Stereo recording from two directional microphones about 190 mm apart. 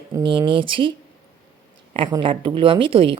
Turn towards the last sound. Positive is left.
turn(degrees=-30)  # may be behind; listen again after turning